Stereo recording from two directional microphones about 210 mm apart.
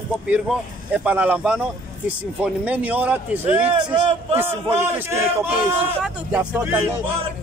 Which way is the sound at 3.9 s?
25° right (ahead or behind).